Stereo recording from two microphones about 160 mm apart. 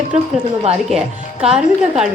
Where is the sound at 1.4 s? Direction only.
5° right (ahead or behind).